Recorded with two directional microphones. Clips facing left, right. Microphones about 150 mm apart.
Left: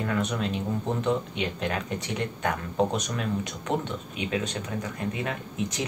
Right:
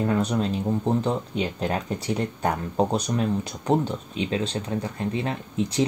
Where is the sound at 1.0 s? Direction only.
35° right (ahead or behind).